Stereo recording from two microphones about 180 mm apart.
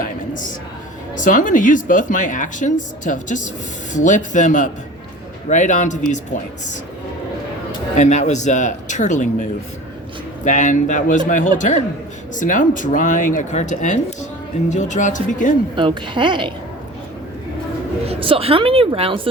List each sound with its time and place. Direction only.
1.1 s a woman's voice: 45° left (ahead or behind)
7.9 s a woman's voice: 40° left (ahead or behind)
15.7 s a woman's voice: 25° right (ahead or behind)
18.0 s speech: 30° right (ahead or behind)